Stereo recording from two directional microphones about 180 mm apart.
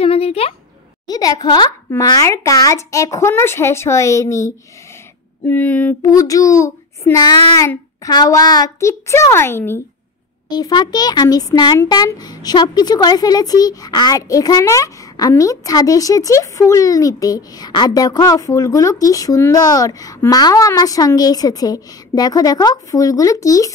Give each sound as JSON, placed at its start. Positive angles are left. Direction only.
{"t": 0.0, "sound": "speech", "side_deg": 35}
{"t": 1.0, "sound": "child singing", "side_deg": 20}
{"t": 5.5, "sound": "child singing", "side_deg": 10}
{"t": 10.5, "sound": "a child's voice", "side_deg": 25}